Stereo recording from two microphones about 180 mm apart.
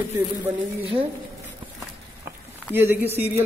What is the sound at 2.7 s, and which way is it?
Speech, 10° right (ahead or behind).